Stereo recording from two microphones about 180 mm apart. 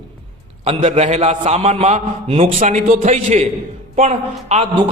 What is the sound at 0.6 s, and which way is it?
A man's voice, 35° right (ahead or behind).